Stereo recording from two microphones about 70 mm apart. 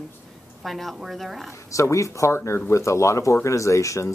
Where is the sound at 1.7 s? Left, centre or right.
Left.